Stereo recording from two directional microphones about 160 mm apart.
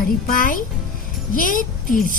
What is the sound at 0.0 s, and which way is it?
A woman's voice, 60° left (ahead or behind).